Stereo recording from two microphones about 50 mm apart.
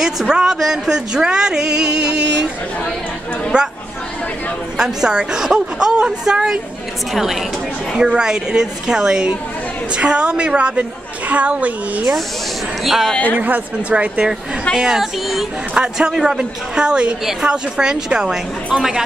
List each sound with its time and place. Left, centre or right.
0.0 s speech: centre
3.5 s speech: centre
4.7 s speech: centre
7.9 s a woman's voice: centre
12.8 s speech: centre
13.4 s a woman's voice: right
14.8 s speech: centre
15.7 s a woman's voice: centre
16.1 s speech: centre